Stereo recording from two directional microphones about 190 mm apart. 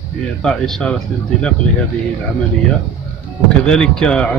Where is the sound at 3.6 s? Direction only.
5° left (ahead or behind).